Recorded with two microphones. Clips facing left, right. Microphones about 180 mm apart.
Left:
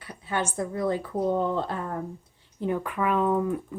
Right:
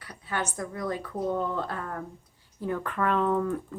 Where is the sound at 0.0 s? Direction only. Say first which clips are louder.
Left 3 dB; 25° left (ahead or behind).